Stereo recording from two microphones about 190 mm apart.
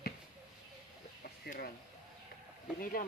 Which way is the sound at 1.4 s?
50° left (ahead or behind).